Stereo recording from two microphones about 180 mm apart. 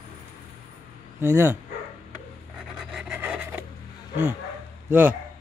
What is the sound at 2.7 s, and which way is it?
Wood, 5° right (ahead or behind).